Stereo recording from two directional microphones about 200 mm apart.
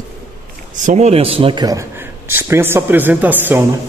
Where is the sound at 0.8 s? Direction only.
35° right (ahead or behind).